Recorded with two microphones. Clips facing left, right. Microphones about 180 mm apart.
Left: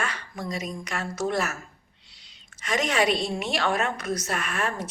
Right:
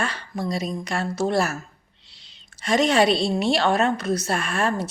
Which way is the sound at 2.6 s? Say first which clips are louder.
Right 6 dB; 30° right (ahead or behind).